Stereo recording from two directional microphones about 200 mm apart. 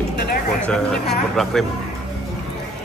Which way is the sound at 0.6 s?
5° left (ahead or behind).